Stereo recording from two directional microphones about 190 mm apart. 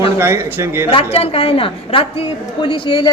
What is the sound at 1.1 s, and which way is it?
A woman's voice, 30° left (ahead or behind).